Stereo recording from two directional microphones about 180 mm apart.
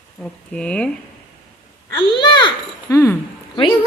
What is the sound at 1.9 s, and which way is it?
A child's voice, 25° left (ahead or behind).